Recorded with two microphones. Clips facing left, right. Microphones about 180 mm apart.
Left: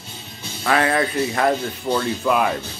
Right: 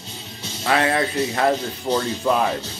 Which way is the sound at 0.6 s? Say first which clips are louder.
Left 1 dB; 25° right (ahead or behind).